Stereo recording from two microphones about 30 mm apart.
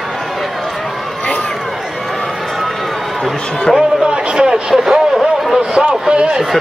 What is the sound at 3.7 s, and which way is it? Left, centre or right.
A man's voice, right.